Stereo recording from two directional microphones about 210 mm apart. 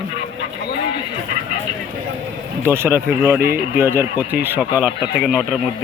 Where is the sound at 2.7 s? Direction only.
10° right (ahead or behind).